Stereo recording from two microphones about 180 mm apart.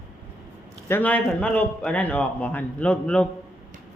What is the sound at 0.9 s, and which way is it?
A man's voice, 10° left (ahead or behind).